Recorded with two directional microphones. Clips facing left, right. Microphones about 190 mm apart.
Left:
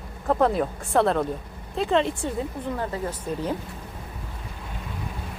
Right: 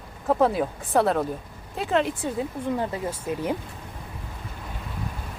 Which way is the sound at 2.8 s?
15° right (ahead or behind).